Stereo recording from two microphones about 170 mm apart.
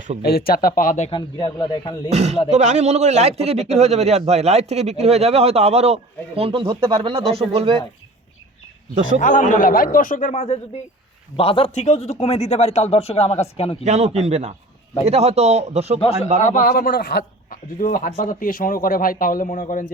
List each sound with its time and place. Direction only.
0.2 s speech: 65° left (ahead or behind); by 1.1 s 45° left (ahead or behind)
1.1 s speech: 25° left (ahead or behind)
2.0 s a man's voice: 40° right (ahead or behind)
9.2 s a man's voice: 50° left (ahead or behind)
10.3 s speech: 40° left (ahead or behind)
13.8 s a man's voice: 40° right (ahead or behind)
16.4 s speech: 50° left (ahead or behind); by 17.6 s 70° left (ahead or behind)
17.7 s a man's voice: 50° left (ahead or behind)